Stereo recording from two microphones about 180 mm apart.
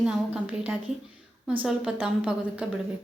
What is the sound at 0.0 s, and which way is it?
A woman's voice, 5° right (ahead or behind).